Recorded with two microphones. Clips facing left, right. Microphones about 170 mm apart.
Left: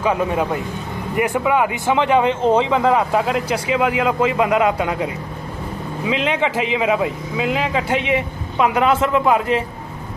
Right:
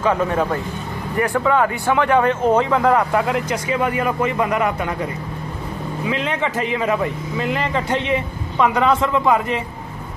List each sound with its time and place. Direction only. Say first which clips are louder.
0.0 s speech: even; 10° left (ahead or behind)
2.7 s speech: even; 5° left (ahead or behind)
3.0 s speech: even; 15° left (ahead or behind)
6.4 s a man's voice: left 2 dB; 90° left
6.8 s speech: left 2 dB; 10° left (ahead or behind)